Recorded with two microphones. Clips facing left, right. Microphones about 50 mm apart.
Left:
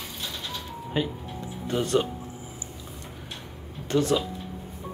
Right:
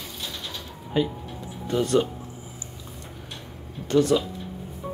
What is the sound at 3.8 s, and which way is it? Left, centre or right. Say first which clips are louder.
Speech: right 3 dB; left.